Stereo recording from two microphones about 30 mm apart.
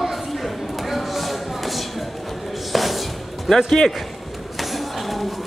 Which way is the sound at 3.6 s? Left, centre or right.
Centre.